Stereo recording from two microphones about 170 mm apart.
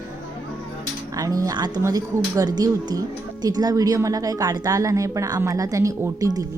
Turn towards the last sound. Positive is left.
turn(degrees=-20)  # may be behind; listen again after turning